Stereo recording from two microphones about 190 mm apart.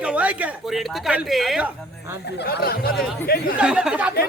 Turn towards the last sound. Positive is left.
turn(degrees=-5)  # may be behind; listen again after turning